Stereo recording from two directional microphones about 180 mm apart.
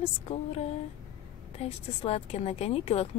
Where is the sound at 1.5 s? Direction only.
35° left (ahead or behind).